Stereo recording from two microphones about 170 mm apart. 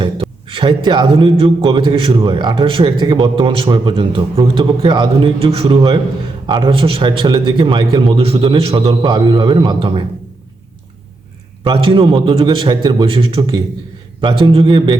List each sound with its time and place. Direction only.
0.0 s a man's voice: 30° right (ahead or behind)
11.6 s a man's voice: 30° right (ahead or behind)